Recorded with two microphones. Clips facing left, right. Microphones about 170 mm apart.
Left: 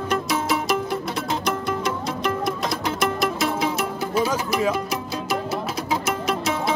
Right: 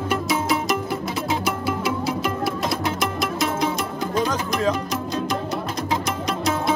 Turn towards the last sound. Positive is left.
turn(degrees=5)  # may be behind; listen again after turning